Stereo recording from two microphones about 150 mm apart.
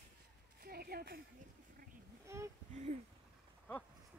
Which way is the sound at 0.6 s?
90° right.